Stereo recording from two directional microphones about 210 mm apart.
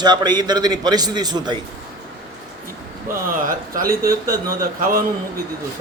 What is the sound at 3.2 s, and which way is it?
Speech, 40° right (ahead or behind).